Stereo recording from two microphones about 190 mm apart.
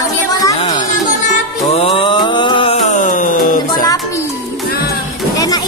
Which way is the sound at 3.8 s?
20° left (ahead or behind).